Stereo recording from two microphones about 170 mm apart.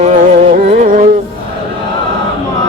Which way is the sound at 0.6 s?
50° right (ahead or behind).